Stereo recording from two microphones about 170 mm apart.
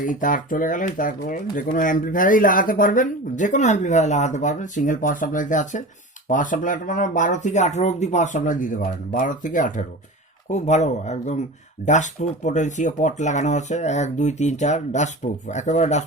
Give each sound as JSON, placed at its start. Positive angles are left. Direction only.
{"t": 0.0, "sound": "speech", "side_deg": 50}